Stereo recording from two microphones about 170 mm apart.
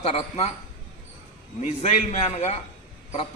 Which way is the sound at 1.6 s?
40° left (ahead or behind).